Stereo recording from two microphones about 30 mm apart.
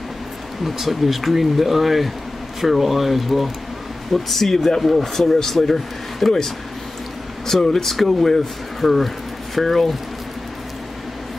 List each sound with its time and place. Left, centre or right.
0.7 s speech: centre
4.8 s speech: centre
5.2 s speech: centre
7.7 s speech: centre